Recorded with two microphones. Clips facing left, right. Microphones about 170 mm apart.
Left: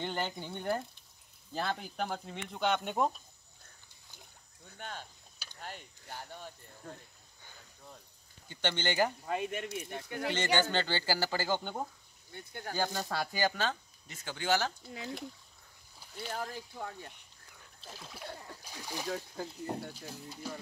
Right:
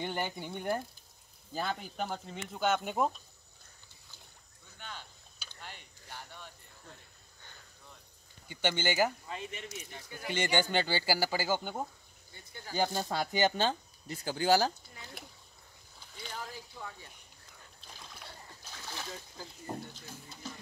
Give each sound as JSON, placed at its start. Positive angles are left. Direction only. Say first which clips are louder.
{"t": 0.0, "sound": "speech", "louder": "even", "side_deg": -10}
{"t": 4.7, "sound": "a sound", "louder": "left 3 dB", "side_deg": 45}
{"t": 8.5, "sound": "speech", "louder": "right 2 dB", "side_deg": -10}
{"t": 9.2, "sound": "speech", "louder": "left 7 dB", "side_deg": 55}
{"t": 10.3, "sound": "speech", "louder": "right 1 dB", "side_deg": -15}
{"t": 12.3, "sound": "speech", "louder": "left 6 dB", "side_deg": 60}
{"t": 12.7, "sound": "speech", "louder": "right 3 dB", "side_deg": -20}
{"t": 16.3, "sound": "speech", "louder": "left 4 dB", "side_deg": 50}
{"t": 17.9, "sound": "speech", "louder": "left 3 dB", "side_deg": 5}
{"t": 18.6, "sound": "splash", "louder": "left 1 dB", "side_deg": 15}
{"t": 19.4, "sound": "speech", "louder": "left 7 dB", "side_deg": 60}
{"t": 19.9, "sound": "speech", "louder": "left 4 dB", "side_deg": 10}